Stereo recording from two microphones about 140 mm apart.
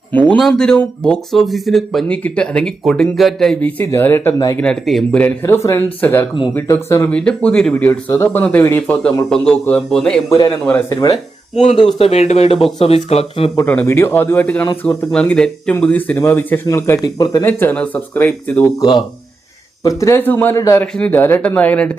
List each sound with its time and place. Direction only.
0.1 s speech: 10° left (ahead or behind)
5.4 s speech: 20° left (ahead or behind); by 10.2 s 5° left (ahead or behind)
10.2 s a man's voice: 25° left (ahead or behind)
11.9 s speech: 45° left (ahead or behind)
13.7 s speech: 15° left (ahead or behind)
17.4 s speech: 15° left (ahead or behind)
18.6 s a man's voice: 25° left (ahead or behind)
20.8 s speech: 5° left (ahead or behind)